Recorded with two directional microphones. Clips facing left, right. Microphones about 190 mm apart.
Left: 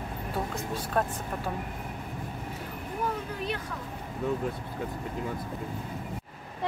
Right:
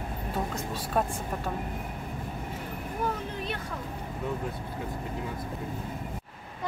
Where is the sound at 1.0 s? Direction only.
5° right (ahead or behind).